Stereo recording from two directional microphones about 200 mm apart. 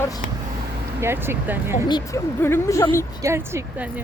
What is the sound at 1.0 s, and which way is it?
Speech, 10° right (ahead or behind).